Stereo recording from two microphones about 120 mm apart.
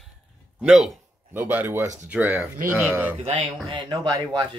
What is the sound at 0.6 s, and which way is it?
Speech, 5° right (ahead or behind).